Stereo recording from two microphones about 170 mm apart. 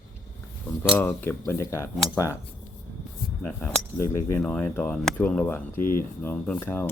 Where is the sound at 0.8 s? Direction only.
10° left (ahead or behind).